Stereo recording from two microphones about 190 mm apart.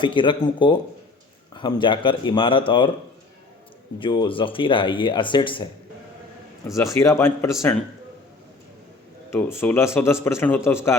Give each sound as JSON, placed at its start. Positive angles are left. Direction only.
{"t": 0.0, "sound": "speech", "side_deg": 25}
{"t": 4.0, "sound": "speech", "side_deg": 25}
{"t": 6.7, "sound": "speech", "side_deg": 15}
{"t": 9.3, "sound": "speech", "side_deg": 10}